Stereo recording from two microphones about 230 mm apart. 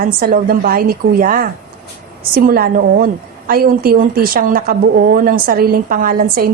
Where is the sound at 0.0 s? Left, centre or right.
Right.